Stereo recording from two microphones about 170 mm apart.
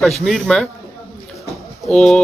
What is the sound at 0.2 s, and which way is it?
Speech, 5° left (ahead or behind).